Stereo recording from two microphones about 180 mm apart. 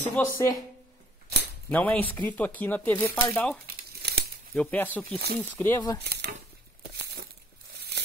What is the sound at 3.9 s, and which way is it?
Crumpling, 60° right (ahead or behind).